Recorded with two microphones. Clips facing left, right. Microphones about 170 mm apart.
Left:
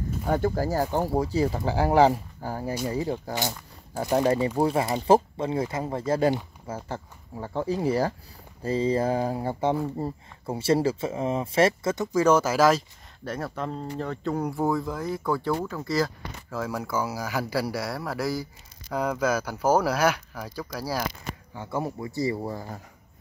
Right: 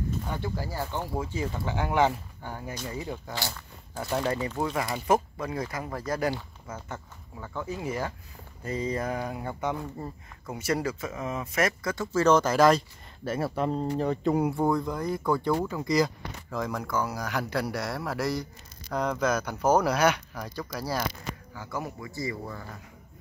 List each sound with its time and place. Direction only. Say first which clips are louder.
0.3 s speech: left 9 dB; 45° left (ahead or behind)
3.3 s speech: left 5 dB; 20° left (ahead or behind); by 14.5 s 15° right (ahead or behind)
14.5 s speech: even; 5° left (ahead or behind)
15.8 s speech: right 2 dB; 15° right (ahead or behind)
16.4 s speech: left 1 dB; 5° left (ahead or behind)
21.5 s speech: left 6 dB; 30° left (ahead or behind)